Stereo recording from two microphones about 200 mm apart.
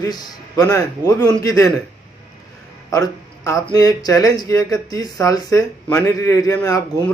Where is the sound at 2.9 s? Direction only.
15° left (ahead or behind).